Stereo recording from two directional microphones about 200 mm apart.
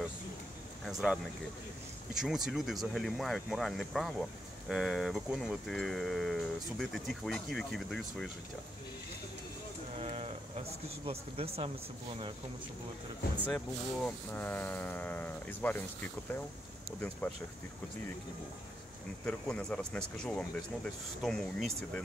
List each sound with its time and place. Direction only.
0.8 s speech: centre (ahead or behind)
9.9 s a sound: 30° right (ahead or behind)
11.1 s speech: 30° right (ahead or behind)
13.5 s speech: 5° left (ahead or behind)
19.2 s speech: 5° left (ahead or behind)